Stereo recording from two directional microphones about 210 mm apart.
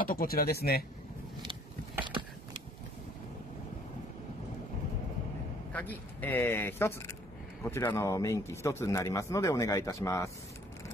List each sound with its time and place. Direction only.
0.0 s speech: 45° left (ahead or behind)
5.7 s speech: 10° left (ahead or behind)